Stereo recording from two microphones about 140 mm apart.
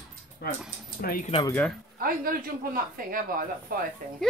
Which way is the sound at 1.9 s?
90° right.